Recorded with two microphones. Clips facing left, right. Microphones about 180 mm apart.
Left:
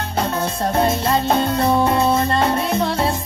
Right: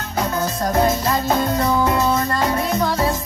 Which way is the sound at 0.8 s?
30° left (ahead or behind).